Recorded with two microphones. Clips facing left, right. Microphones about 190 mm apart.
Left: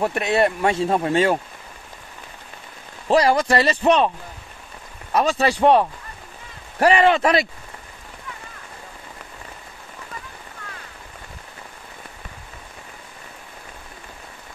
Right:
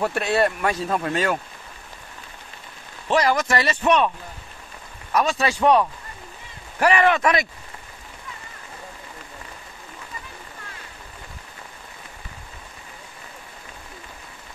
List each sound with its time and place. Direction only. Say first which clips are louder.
0.0 s speech: left 2 dB; 20° left (ahead or behind)
3.1 s speech: left 3 dB; 30° left (ahead or behind)
5.1 s speech: left 2 dB; 35° left (ahead or behind)